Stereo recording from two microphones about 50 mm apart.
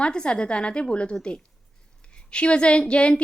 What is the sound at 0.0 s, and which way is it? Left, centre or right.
A woman's voice, centre.